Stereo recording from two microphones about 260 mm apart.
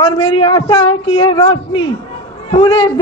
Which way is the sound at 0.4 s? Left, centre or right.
Centre.